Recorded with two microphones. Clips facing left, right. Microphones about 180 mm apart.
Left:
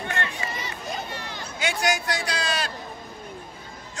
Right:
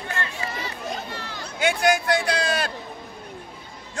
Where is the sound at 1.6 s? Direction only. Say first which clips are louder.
Right 5 dB; 55° right (ahead or behind).